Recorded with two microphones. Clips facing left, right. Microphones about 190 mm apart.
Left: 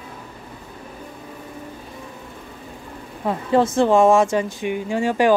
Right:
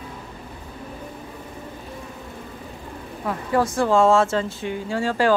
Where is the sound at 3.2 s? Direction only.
25° left (ahead or behind).